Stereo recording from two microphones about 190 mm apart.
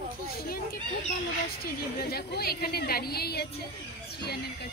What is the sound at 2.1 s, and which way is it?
Speech, 55° left (ahead or behind).